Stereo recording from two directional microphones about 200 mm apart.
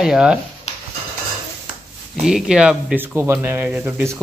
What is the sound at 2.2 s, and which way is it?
Speech, 5° right (ahead or behind).